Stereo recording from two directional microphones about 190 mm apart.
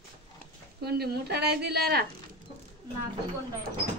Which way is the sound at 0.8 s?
55° right (ahead or behind).